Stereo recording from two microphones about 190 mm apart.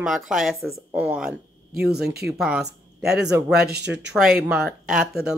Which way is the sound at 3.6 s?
60° right (ahead or behind).